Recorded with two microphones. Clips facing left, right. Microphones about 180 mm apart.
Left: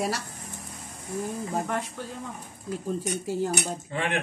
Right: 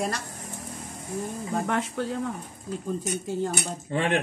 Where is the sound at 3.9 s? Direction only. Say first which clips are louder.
Right 6 dB; 35° right (ahead or behind).